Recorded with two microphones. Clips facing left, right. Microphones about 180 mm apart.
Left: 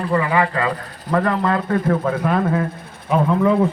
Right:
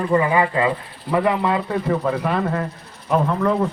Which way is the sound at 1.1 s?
10° right (ahead or behind).